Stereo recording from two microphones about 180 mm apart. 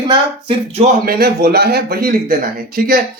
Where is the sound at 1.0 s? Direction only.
60° right (ahead or behind).